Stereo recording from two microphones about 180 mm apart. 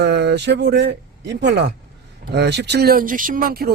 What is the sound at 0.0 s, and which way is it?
Speech, 70° right (ahead or behind).